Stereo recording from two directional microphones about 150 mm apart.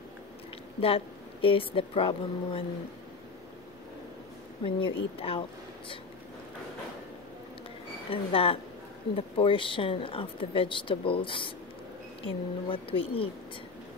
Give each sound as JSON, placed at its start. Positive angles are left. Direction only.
{"t": 0.7, "sound": "a woman's voice", "side_deg": 40}
{"t": 4.6, "sound": "a woman's voice", "side_deg": 35}
{"t": 8.1, "sound": "a woman's voice", "side_deg": 40}